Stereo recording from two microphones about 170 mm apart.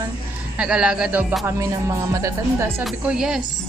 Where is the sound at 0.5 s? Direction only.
5° right (ahead or behind).